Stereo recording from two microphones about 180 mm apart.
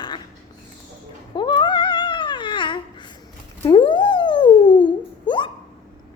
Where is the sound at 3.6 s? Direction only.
25° left (ahead or behind).